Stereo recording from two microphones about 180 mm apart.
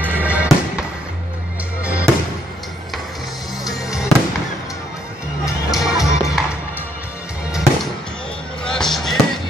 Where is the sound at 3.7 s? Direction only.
5° right (ahead or behind).